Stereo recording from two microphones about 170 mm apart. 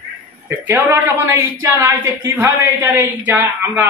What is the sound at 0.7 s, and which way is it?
A woman's voice, 15° right (ahead or behind).